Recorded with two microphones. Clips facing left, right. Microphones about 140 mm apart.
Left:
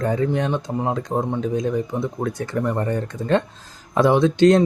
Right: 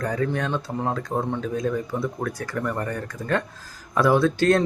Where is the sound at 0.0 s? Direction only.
25° left (ahead or behind).